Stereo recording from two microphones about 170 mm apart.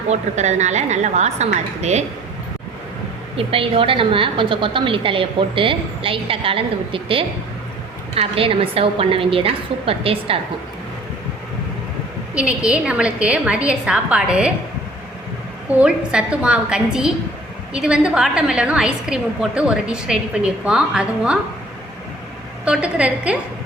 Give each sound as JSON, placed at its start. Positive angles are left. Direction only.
{"t": 0.1, "sound": "a woman's voice", "side_deg": -40}
{"t": 3.3, "sound": "a woman's voice", "side_deg": -35}
{"t": 12.3, "sound": "a woman's voice", "side_deg": -5}
{"t": 15.7, "sound": "a woman's voice", "side_deg": -5}
{"t": 22.6, "sound": "a woman's voice", "side_deg": -5}